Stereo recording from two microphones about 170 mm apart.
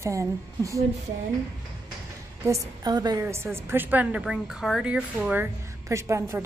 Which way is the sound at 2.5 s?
25° right (ahead or behind).